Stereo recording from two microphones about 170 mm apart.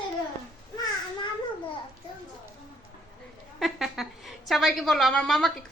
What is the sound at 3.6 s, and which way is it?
A woman's voice, centre (ahead or behind).